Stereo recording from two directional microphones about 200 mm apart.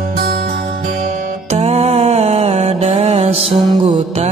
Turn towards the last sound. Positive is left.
turn(degrees=-30)  # may be behind; listen again after turning